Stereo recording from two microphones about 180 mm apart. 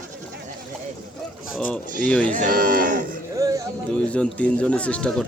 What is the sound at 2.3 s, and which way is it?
Moo, 50° right (ahead or behind).